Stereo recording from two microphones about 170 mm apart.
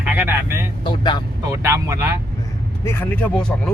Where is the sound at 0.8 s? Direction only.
25° left (ahead or behind).